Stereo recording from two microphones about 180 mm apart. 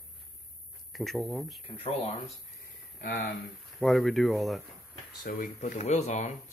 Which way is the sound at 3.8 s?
Centre (ahead or behind).